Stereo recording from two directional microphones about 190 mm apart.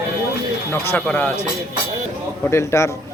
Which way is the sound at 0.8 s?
10° left (ahead or behind).